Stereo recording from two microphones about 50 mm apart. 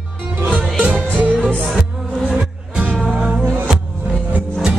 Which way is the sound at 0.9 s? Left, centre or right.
Right.